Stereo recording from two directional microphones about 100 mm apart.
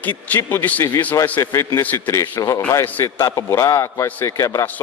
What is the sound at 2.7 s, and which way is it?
A man's voice, 20° left (ahead or behind).